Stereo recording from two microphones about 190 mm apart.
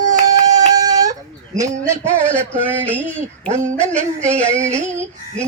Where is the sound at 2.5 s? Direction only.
10° right (ahead or behind).